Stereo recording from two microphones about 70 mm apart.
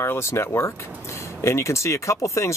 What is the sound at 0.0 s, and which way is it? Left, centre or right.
Speech, left.